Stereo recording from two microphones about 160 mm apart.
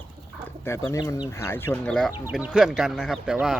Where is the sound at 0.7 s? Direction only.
15° left (ahead or behind).